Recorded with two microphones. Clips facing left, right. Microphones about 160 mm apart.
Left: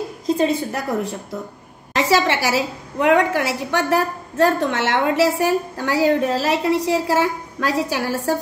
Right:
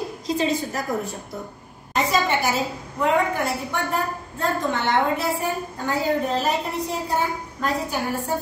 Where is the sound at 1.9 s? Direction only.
90° left.